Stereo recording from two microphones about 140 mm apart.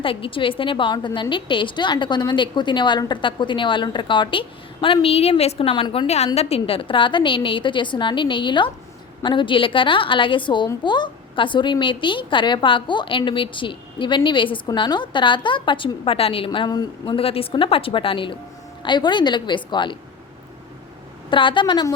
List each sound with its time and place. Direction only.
0.0 s a woman's voice: 40° left (ahead or behind)
17.2 s a woman's voice: 45° left (ahead or behind)
21.2 s a woman's voice: 35° left (ahead or behind)